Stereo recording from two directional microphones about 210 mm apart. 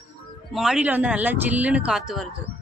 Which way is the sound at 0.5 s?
Centre (ahead or behind).